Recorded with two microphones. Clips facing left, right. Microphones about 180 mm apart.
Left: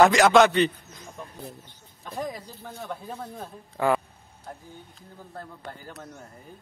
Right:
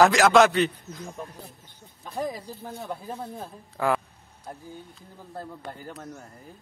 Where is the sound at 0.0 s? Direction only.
Centre (ahead or behind).